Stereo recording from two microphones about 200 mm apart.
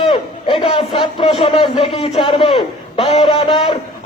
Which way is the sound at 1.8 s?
30° left (ahead or behind).